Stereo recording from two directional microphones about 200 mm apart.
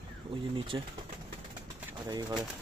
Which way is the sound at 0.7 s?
20° right (ahead or behind).